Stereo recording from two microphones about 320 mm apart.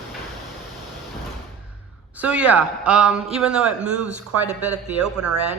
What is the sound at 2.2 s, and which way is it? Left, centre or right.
A woman's voice, centre.